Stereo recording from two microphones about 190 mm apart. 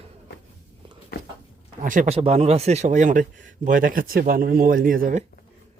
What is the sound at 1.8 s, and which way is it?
Speech, 45° right (ahead or behind).